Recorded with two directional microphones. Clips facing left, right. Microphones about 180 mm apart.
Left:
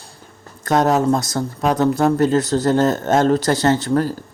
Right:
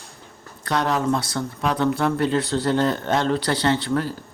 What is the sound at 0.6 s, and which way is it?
Speech, 45° left (ahead or behind).